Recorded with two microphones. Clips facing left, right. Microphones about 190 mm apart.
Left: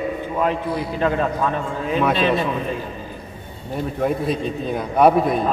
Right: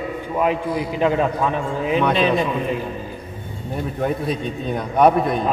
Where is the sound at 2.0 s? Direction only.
Centre (ahead or behind).